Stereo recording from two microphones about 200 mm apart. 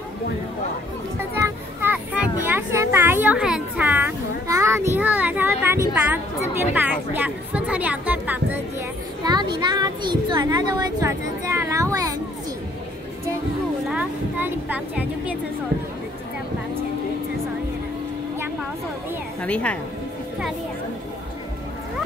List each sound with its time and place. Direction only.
1.3 s children playing: 10° right (ahead or behind)
6.7 s chatter: 10° right (ahead or behind)
9.2 s a sound: 20° right (ahead or behind)
13.8 s speech: 5° right (ahead or behind)
19.4 s a woman's voice: 5° left (ahead or behind)